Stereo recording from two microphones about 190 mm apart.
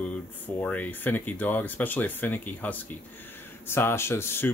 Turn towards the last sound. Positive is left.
turn(degrees=10)  # may be behind; listen again after turning